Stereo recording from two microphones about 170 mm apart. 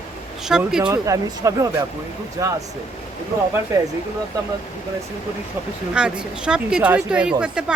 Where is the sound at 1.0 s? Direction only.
20° right (ahead or behind).